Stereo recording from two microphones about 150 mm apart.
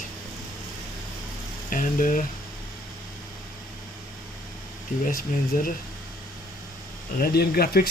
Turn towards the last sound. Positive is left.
turn(degrees=90)